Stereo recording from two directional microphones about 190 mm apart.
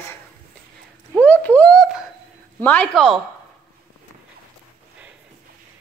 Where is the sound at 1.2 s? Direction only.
10° left (ahead or behind).